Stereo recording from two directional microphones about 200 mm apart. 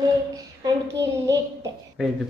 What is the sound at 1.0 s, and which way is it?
Speech, 15° right (ahead or behind).